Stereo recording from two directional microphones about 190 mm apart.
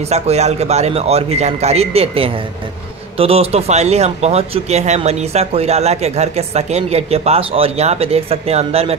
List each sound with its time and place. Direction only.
0.1 s speech: 35° right (ahead or behind)